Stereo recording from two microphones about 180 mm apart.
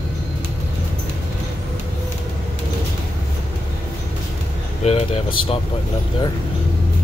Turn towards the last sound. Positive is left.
turn(degrees=35)  # may be behind; listen again after turning